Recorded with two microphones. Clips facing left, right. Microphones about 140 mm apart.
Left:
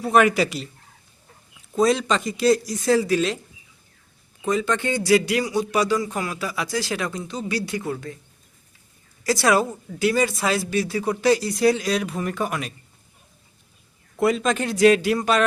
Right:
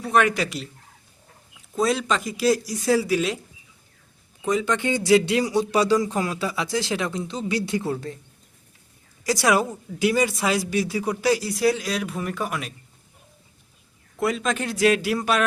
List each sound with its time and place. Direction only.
0.0 s speech: 5° left (ahead or behind)
1.7 s speech: centre (ahead or behind)
4.4 s speech: 15° right (ahead or behind)
9.2 s speech: 15° right (ahead or behind)
14.2 s speech: centre (ahead or behind)